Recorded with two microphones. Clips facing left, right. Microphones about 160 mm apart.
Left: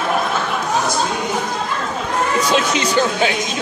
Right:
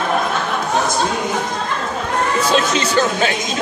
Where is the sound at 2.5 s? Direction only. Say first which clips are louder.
Right 1 dB; 15° left (ahead or behind).